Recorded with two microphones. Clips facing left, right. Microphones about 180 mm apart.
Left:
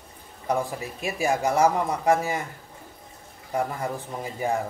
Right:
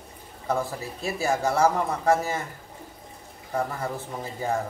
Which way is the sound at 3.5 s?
15° left (ahead or behind).